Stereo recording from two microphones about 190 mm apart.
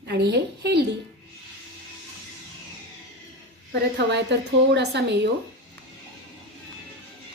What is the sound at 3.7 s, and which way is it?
A woman's voice, 65° right (ahead or behind).